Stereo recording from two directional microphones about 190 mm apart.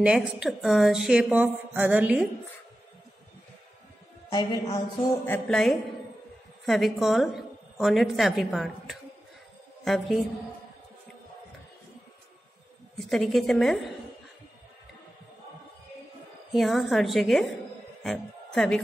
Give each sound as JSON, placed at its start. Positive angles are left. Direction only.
{"t": 0.0, "sound": "a woman's voice", "side_deg": -5}
{"t": 4.3, "sound": "a man's voice", "side_deg": 20}
{"t": 5.2, "sound": "a woman's voice", "side_deg": 5}
{"t": 13.1, "sound": "a woman's voice", "side_deg": 0}
{"t": 16.5, "sound": "a woman's voice", "side_deg": 0}